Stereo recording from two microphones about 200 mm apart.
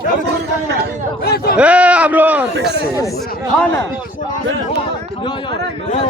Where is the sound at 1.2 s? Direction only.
50° left (ahead or behind).